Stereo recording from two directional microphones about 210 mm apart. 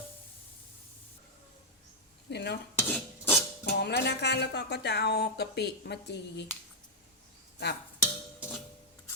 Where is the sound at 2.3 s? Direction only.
55° left (ahead or behind).